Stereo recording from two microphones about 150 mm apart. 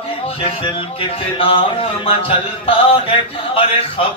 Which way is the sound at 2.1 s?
40° left (ahead or behind).